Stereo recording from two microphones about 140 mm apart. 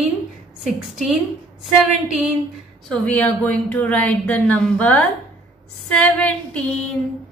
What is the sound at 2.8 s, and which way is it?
A woman's voice, 10° left (ahead or behind).